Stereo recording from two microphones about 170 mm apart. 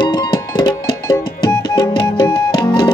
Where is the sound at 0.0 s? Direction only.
25° left (ahead or behind).